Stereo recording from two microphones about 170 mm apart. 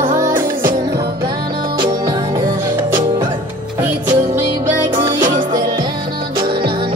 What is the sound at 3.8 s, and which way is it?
Music, 10° right (ahead or behind).